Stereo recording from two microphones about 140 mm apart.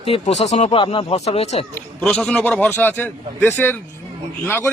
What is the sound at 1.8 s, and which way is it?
A man's voice, 10° left (ahead or behind).